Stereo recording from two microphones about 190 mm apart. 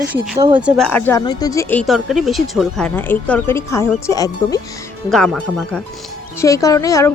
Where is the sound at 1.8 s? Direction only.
Centre (ahead or behind); by 4.6 s 20° left (ahead or behind).